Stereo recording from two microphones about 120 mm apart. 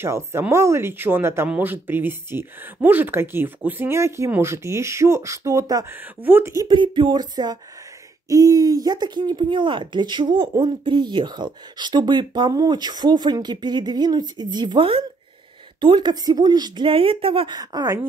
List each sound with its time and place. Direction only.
0.0 s speech: 20° right (ahead or behind)
5.9 s speech: 15° right (ahead or behind)
6.7 s speech: 40° right (ahead or behind)
17.6 s speech: 30° right (ahead or behind)